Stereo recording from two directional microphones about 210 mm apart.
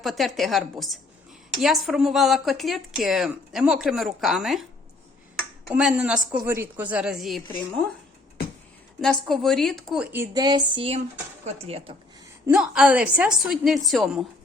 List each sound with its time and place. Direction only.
0.0 s speech: centre (ahead or behind)
5.4 s a sound: centre (ahead or behind)
6.3 s speech: 10° right (ahead or behind)
9.0 s speech: centre (ahead or behind); by 11.9 s 30° right (ahead or behind)
12.5 s speech: 5° right (ahead or behind)